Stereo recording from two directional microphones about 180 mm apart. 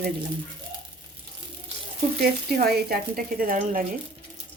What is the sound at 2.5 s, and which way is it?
Speech, 60° right (ahead or behind).